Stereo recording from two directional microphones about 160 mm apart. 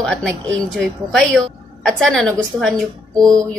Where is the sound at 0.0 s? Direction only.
5° left (ahead or behind).